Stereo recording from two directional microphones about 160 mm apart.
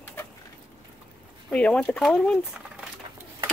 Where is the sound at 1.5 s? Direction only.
5° left (ahead or behind).